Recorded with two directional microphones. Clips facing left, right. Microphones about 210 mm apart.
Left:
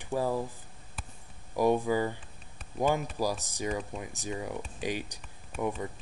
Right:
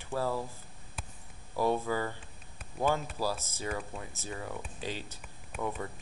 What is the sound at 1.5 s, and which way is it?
Speech, 15° left (ahead or behind).